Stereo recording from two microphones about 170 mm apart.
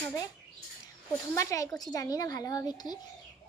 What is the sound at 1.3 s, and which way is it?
A child's voice, 20° left (ahead or behind).